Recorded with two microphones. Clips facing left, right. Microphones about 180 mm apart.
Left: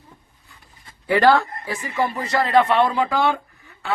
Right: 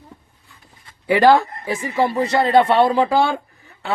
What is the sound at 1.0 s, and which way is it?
Speech, 15° right (ahead or behind).